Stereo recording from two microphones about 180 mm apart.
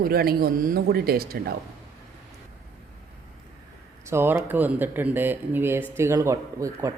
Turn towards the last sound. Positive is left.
turn(degrees=-15)  # may be behind; listen again after turning